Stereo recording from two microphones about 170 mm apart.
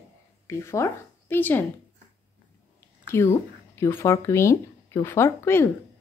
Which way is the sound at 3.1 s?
15° left (ahead or behind).